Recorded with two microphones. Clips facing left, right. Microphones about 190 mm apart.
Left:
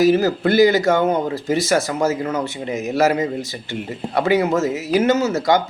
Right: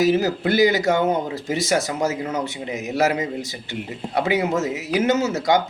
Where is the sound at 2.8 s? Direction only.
15° right (ahead or behind).